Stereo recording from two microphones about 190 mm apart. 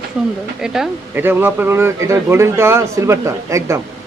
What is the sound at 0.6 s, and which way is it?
A man's voice, 5° right (ahead or behind).